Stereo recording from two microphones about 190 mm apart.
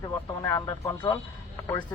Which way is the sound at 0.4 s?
15° left (ahead or behind).